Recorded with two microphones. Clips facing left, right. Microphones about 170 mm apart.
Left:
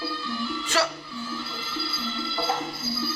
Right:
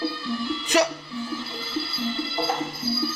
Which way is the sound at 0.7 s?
15° right (ahead or behind).